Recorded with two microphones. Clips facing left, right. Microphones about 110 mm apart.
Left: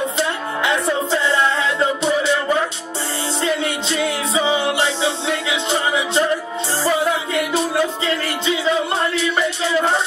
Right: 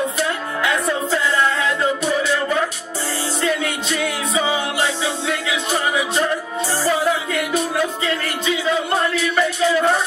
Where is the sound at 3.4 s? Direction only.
25° left (ahead or behind).